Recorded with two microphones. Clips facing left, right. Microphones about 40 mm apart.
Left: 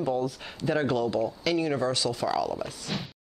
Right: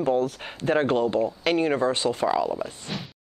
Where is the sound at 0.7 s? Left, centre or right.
Right.